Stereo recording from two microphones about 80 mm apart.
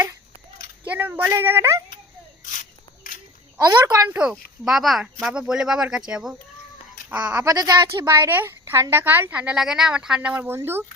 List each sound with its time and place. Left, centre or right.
0.9 s speech: right
3.6 s a woman's voice: right
4.2 s speech: centre
7.4 s a woman's voice: right
8.3 s speech: right
9.6 s speech: centre
10.5 s speech: right